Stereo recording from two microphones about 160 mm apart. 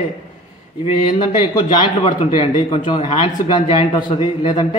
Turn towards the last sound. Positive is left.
turn(degrees=25)  # may be behind; listen again after turning